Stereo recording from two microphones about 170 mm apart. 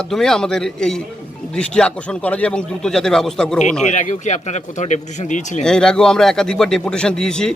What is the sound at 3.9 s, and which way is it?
Speech, 45° left (ahead or behind).